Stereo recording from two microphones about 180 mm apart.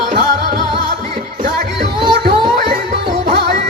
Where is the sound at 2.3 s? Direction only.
30° right (ahead or behind).